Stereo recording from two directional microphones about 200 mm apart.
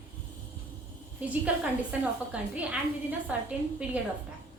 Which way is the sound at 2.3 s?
5° right (ahead or behind).